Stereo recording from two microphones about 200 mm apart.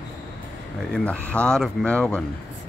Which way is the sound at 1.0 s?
5° left (ahead or behind).